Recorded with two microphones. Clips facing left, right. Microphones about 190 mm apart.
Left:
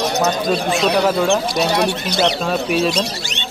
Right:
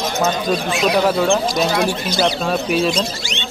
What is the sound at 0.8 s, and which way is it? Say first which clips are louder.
A man's voice: right 2 dB; 5° right (ahead or behind).